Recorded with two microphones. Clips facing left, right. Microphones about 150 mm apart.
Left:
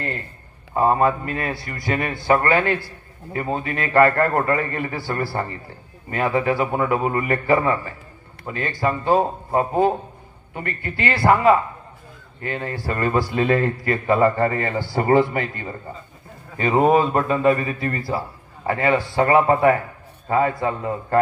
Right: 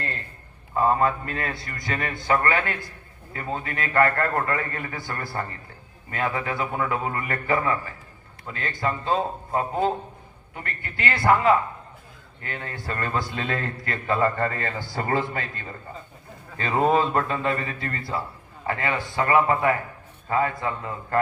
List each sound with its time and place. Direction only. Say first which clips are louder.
0.7 s a man's voice: left 3 dB; 20° left (ahead or behind)